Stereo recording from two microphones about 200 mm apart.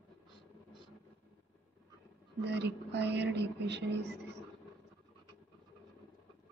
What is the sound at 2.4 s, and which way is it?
Speech, 60° right (ahead or behind).